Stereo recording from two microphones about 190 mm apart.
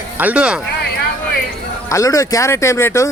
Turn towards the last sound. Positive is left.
turn(degrees=15)  # may be behind; listen again after turning